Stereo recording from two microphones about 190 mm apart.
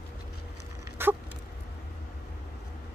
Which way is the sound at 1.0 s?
10° right (ahead or behind).